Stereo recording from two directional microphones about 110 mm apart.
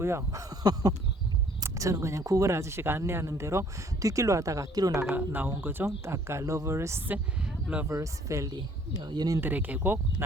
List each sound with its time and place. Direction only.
0.0 s speech: 25° right (ahead or behind)
5.1 s speech: 15° right (ahead or behind)
8.5 s speech: 40° right (ahead or behind)
9.4 s speech: 15° right (ahead or behind)